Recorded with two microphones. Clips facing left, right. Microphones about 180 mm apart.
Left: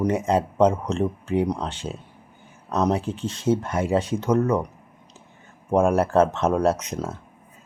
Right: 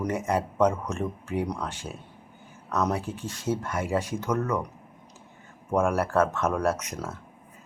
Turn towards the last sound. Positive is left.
turn(degrees=25)  # may be behind; listen again after turning